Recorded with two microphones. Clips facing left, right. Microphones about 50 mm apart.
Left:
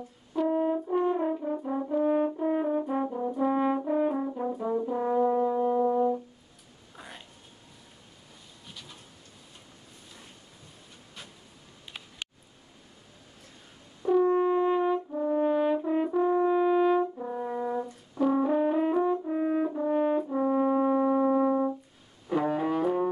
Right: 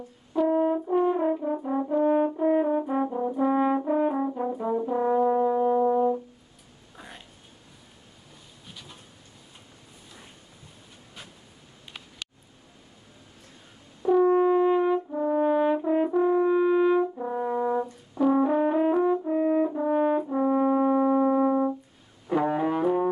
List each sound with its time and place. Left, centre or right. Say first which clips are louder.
0.5 s french horn: right 3 dB; centre
1.2 s brass instrument: right 3 dB; centre
7.0 s a sound: right 1 dB; centre
8.6 s bee: right 1 dB; centre
14.2 s brass instrument: right 6 dB; right
14.8 s french horn: right 3 dB; right
15.4 s brass instrument: right 3 dB; centre
17.0 s french horn: right 3 dB; right
17.5 s brass instrument: right 6 dB; centre
19.2 s french horn: right 4 dB; centre
22.3 s music: right 2 dB; centre